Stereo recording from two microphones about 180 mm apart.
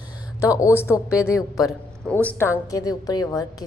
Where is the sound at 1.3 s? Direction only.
Centre (ahead or behind).